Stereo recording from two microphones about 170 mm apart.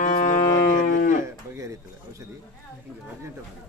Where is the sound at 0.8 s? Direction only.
50° left (ahead or behind).